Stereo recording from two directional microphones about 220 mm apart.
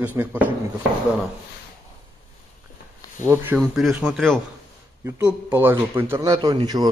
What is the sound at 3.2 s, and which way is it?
Speech, 10° right (ahead or behind).